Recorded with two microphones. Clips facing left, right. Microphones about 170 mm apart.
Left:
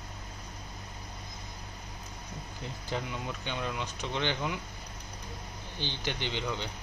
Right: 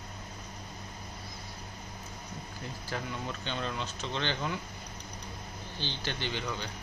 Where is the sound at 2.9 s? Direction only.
15° left (ahead or behind).